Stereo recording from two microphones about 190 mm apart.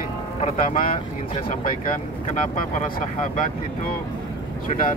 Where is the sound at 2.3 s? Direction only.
40° left (ahead or behind).